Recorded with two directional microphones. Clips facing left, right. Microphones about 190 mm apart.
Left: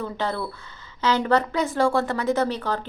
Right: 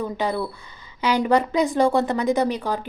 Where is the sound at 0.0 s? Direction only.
15° right (ahead or behind).